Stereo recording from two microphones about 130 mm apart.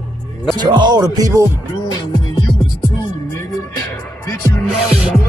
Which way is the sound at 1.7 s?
30° left (ahead or behind).